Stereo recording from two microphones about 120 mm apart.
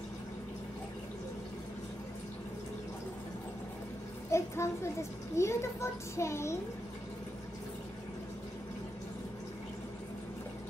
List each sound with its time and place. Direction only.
4.3 s a child's voice: 25° left (ahead or behind)